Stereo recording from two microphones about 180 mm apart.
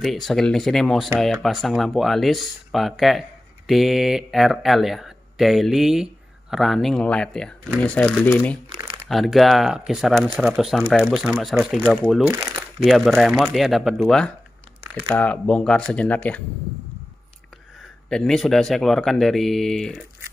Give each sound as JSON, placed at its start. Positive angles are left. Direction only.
{"t": 0.0, "sound": "speech", "side_deg": 0}
{"t": 8.6, "sound": "crumpling", "side_deg": -25}
{"t": 9.1, "sound": "speech", "side_deg": 0}
{"t": 12.3, "sound": "speech", "side_deg": -15}
{"t": 12.8, "sound": "speech", "side_deg": 0}
{"t": 18.1, "sound": "speech", "side_deg": 0}